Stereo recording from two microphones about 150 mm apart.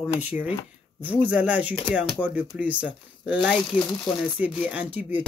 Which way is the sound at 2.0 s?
Centre (ahead or behind).